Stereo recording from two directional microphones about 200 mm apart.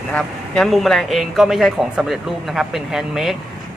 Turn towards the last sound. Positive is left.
turn(degrees=0)  # may be behind; listen again after turning